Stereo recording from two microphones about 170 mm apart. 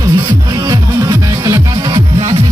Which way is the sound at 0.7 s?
20° right (ahead or behind).